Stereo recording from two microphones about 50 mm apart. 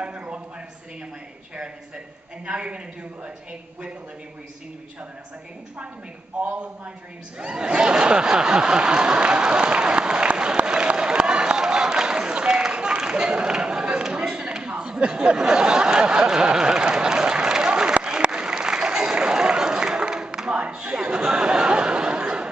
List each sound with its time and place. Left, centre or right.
0.0 s a sound: right
2.4 s a woman's voice: right
6.4 s a woman's voice: right
7.3 s snicker: centre
14.1 s a sound: right
17.9 s applause: right